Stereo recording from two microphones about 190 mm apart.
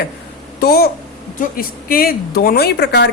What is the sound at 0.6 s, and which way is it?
A woman's voice, 55° left (ahead or behind).